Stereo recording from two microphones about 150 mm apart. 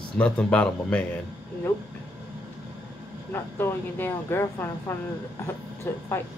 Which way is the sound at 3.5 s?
15° left (ahead or behind).